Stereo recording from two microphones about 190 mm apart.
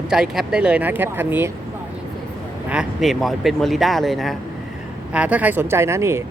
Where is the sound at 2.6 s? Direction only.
5° right (ahead or behind).